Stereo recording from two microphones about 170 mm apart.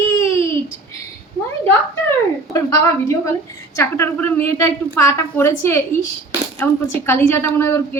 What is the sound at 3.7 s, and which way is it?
A woman's voice, 15° left (ahead or behind).